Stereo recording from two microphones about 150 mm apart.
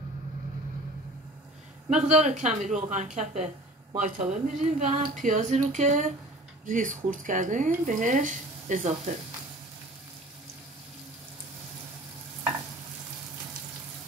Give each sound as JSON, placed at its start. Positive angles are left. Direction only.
{"t": 1.9, "sound": "speech", "side_deg": -55}